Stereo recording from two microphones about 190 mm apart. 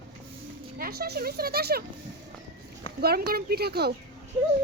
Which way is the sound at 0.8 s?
55° right (ahead or behind).